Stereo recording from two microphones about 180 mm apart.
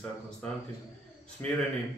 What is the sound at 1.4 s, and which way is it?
Speech, 15° left (ahead or behind).